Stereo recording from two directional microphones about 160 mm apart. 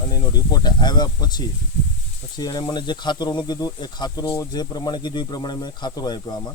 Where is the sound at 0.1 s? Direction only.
25° left (ahead or behind).